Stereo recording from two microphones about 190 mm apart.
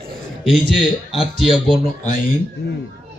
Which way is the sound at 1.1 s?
Centre (ahead or behind).